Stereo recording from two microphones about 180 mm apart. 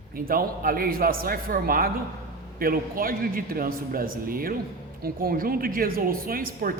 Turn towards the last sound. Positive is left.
turn(degrees=-55)  # may be behind; listen again after turning